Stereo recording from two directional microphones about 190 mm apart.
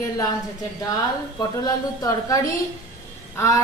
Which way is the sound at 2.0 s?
15° left (ahead or behind).